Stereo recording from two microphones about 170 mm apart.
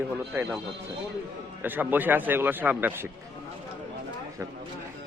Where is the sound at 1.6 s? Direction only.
10° right (ahead or behind).